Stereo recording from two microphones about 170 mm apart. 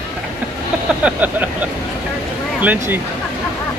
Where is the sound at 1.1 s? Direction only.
10° right (ahead or behind).